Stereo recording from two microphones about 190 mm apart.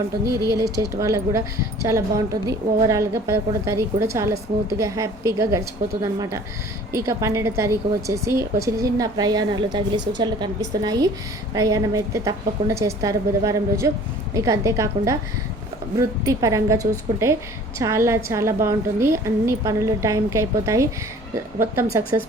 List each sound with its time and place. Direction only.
0.5 s speech: 20° right (ahead or behind)